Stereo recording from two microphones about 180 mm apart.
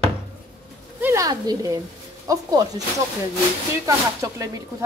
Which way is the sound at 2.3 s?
20° right (ahead or behind).